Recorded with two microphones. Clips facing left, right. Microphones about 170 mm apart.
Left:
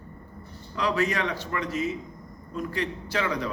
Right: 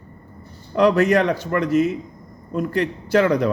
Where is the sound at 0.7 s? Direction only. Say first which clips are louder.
Right 11 dB; 50° right (ahead or behind).